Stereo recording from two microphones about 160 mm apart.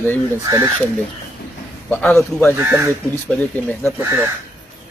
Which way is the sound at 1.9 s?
10° left (ahead or behind).